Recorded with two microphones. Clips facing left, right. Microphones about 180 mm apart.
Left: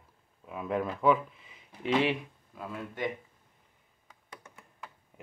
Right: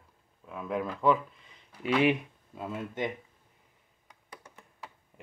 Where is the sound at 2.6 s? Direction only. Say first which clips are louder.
Right 3 dB; 20° right (ahead or behind).